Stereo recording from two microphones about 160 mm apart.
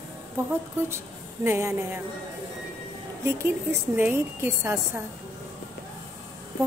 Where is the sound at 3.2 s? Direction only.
15° right (ahead or behind).